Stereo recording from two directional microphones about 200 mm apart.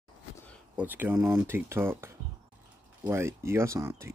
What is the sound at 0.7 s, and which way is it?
Speech, 10° right (ahead or behind).